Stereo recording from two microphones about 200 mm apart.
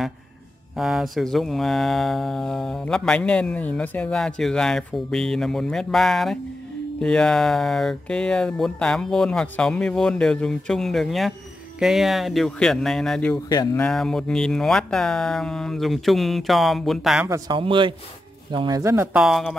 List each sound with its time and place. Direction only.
0.7 s speech: centre (ahead or behind)
13.5 s speech: 20° left (ahead or behind)
13.8 s speech: centre (ahead or behind)
17.3 s speech: 25° right (ahead or behind); by 19.5 s centre (ahead or behind)